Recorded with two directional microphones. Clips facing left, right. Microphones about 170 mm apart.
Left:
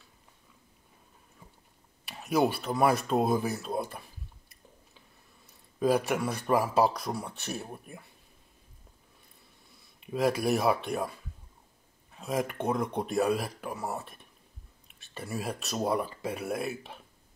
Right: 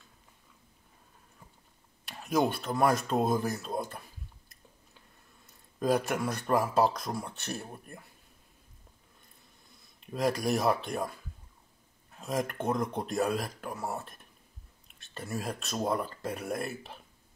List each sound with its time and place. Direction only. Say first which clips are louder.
2.0 s speech: left 2 dB; 5° left (ahead or behind)
5.8 s speech: left 2 dB; centre (ahead or behind)
9.9 s speech: left 2 dB; 5° left (ahead or behind)